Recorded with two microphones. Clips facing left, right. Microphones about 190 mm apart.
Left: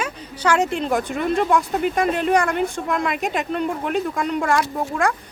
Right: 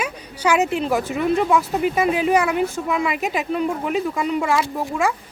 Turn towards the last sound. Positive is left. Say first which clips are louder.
# even
turn(degrees=0)  # may be behind; listen again after turning